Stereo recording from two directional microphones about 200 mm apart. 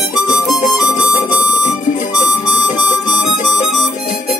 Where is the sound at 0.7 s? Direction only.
5° right (ahead or behind).